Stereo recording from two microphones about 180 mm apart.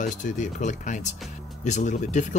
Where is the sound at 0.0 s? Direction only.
45° left (ahead or behind).